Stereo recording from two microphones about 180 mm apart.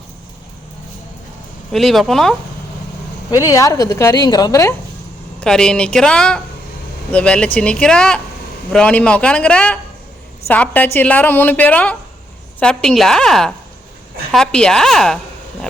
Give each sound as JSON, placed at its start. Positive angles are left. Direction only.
{"t": 1.7, "sound": "speech", "side_deg": 0}
{"t": 3.3, "sound": "a woman's voice", "side_deg": 15}
{"t": 5.4, "sound": "a woman's voice", "side_deg": 5}